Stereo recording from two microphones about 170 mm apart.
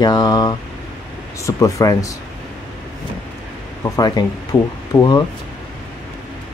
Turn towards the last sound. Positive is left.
turn(degrees=20)  # may be behind; listen again after turning